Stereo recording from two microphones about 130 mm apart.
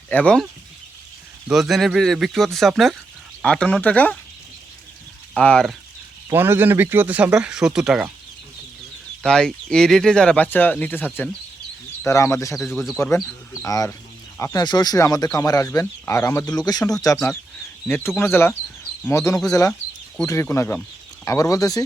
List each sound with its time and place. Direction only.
0.1 s speech: 10° left (ahead or behind)
1.5 s speech: centre (ahead or behind)
5.3 s speech: 10° left (ahead or behind)
6.3 s speech: 15° right (ahead or behind)
9.2 s speech: 5° left (ahead or behind); by 12.5 s 25° left (ahead or behind)
12.5 s speech: centre (ahead or behind)
13.1 s speech: 10° left (ahead or behind)
13.7 s speech: 25° left (ahead or behind)
18.2 s speech: 20° left (ahead or behind)